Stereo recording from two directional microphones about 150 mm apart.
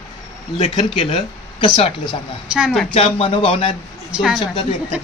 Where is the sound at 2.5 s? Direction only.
5° right (ahead or behind).